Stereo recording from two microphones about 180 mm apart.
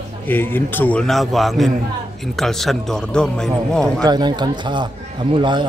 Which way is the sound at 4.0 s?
25° right (ahead or behind).